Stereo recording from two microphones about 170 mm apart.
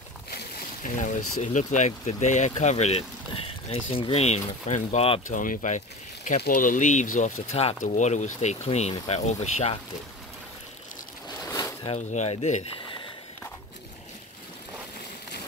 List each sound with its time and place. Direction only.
0.8 s speech: 50° left (ahead or behind)
5.3 s speech: 50° left (ahead or behind)
11.2 s a sound: 20° left (ahead or behind)
11.9 s speech: 40° left (ahead or behind)